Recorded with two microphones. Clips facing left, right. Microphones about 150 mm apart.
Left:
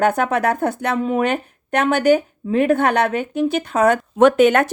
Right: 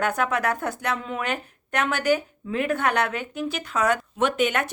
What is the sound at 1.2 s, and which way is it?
Speech, 25° left (ahead or behind).